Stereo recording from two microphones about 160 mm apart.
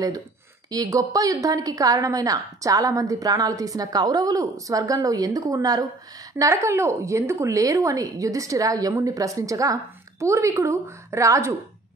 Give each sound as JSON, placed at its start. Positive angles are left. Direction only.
{"t": 0.7, "sound": "a woman's voice", "side_deg": -20}